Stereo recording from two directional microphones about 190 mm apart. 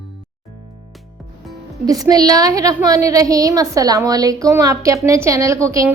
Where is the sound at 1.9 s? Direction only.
20° right (ahead or behind).